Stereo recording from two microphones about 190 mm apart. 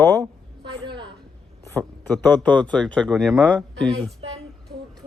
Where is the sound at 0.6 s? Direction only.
25° right (ahead or behind).